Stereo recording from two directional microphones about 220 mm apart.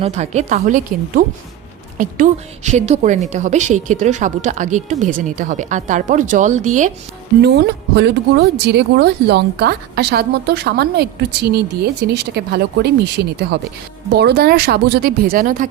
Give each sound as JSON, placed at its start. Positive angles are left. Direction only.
{"t": 0.0, "sound": "a woman's voice", "side_deg": -30}
{"t": 7.4, "sound": "speech", "side_deg": -50}
{"t": 14.2, "sound": "speech", "side_deg": -45}